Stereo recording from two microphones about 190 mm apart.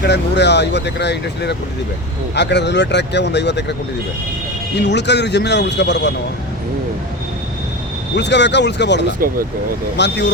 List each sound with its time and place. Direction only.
0.0 s speech: 65° left (ahead or behind)
4.8 s speech: 65° left (ahead or behind)
8.1 s speech: 65° left (ahead or behind)